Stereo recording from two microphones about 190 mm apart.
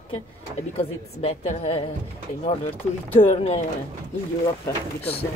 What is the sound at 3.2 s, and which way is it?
Speech, 35° left (ahead or behind).